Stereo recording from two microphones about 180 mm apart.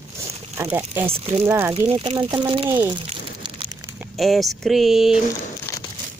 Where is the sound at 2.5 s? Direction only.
25° right (ahead or behind).